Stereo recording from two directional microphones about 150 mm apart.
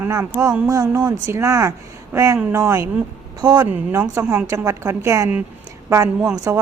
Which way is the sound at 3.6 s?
15° right (ahead or behind).